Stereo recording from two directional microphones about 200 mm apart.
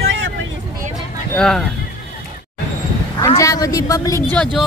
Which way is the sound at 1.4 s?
Centre (ahead or behind).